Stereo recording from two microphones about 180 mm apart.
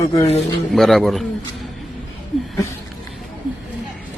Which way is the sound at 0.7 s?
Centre (ahead or behind).